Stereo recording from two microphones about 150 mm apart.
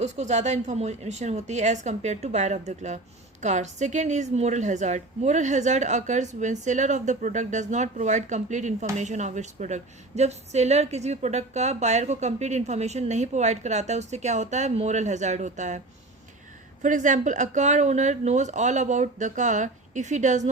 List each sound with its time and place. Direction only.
0.0 s speech: 50° right (ahead or behind)
16.8 s speech: 55° right (ahead or behind)